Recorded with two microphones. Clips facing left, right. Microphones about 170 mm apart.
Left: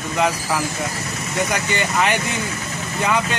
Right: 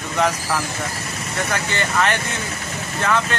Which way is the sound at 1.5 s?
15° left (ahead or behind).